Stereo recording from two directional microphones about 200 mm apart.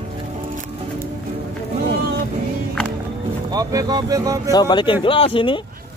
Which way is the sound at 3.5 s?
20° right (ahead or behind).